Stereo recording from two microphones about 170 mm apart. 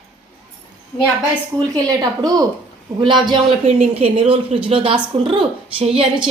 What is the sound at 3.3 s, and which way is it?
Speech, 35° right (ahead or behind).